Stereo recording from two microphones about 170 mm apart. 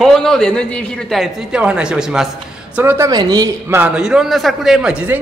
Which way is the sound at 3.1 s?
25° right (ahead or behind).